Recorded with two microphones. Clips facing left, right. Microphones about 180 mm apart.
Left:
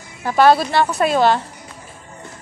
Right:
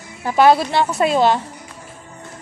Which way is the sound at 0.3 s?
20° right (ahead or behind).